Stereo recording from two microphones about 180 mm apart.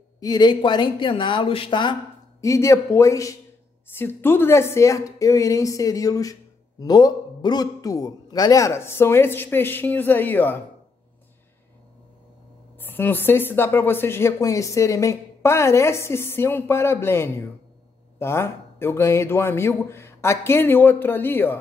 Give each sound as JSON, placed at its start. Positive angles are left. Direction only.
{"t": 0.2, "sound": "speech", "side_deg": 20}
{"t": 12.7, "sound": "speech", "side_deg": 10}